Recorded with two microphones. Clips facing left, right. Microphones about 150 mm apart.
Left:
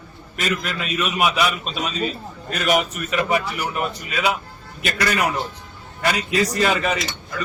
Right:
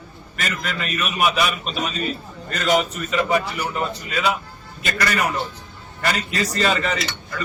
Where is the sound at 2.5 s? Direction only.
10° left (ahead or behind).